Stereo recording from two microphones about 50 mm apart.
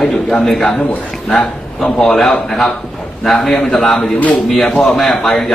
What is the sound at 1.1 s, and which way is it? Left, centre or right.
A man's voice, centre.